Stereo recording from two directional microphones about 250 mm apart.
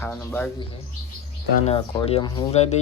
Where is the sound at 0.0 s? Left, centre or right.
Centre.